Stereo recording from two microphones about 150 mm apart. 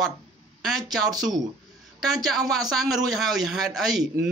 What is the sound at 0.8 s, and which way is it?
Speech, 25° right (ahead or behind).